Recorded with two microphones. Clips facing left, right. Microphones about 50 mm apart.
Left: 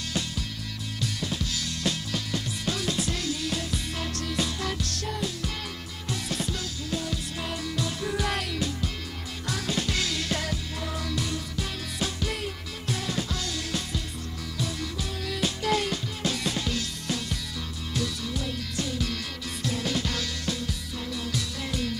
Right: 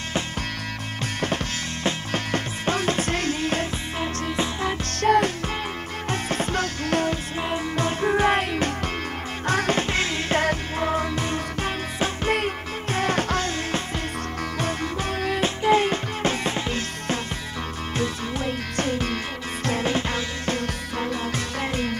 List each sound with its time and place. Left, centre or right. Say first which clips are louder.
1.2 s music: right 5 dB; right
4.0 s music: right 6 dB; right
5.0 s music: right 16 dB; right
7.4 s music: right 7 dB; right
20.5 s music: right 7 dB; right